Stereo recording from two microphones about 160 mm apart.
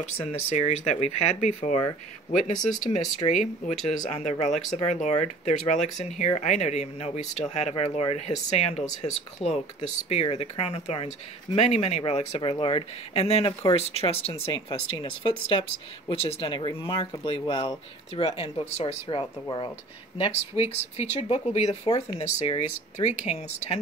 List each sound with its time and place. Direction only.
0.0 s speech: 40° left (ahead or behind)
2.8 s speech: 45° left (ahead or behind); by 18.2 s 30° left (ahead or behind)
18.2 s speech: 40° left (ahead or behind)
19.4 s speech: 25° left (ahead or behind)
20.5 s speech: 15° right (ahead or behind)
21.1 s speech: 40° left (ahead or behind)
21.8 s speech: 25° left (ahead or behind)
22.5 s speech: 45° left (ahead or behind)